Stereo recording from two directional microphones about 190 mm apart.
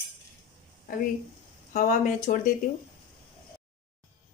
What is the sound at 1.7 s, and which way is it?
Speech, 40° left (ahead or behind).